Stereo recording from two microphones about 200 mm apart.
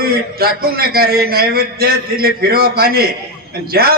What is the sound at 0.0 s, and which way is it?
A man's voice, 50° right (ahead or behind).